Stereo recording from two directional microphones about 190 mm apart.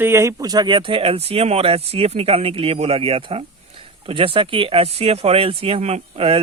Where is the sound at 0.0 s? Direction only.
15° right (ahead or behind).